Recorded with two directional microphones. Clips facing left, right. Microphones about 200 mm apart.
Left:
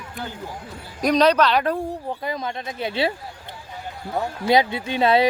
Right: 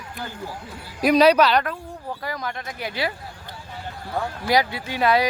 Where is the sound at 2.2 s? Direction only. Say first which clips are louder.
Left 1 dB; 20° left (ahead or behind).